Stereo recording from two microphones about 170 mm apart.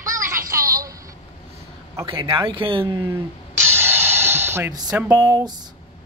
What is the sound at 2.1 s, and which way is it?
Speech, 25° right (ahead or behind).